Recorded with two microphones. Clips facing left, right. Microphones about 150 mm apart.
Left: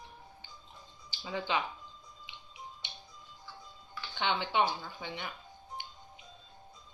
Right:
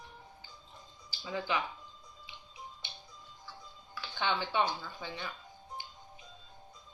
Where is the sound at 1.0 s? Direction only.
20° left (ahead or behind).